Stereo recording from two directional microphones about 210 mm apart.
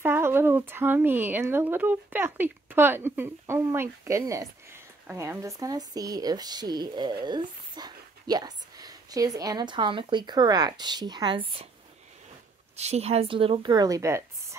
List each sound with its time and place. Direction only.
0.0 s speech: 10° right (ahead or behind)
12.7 s a woman's voice: 30° right (ahead or behind); by 14.6 s 15° right (ahead or behind)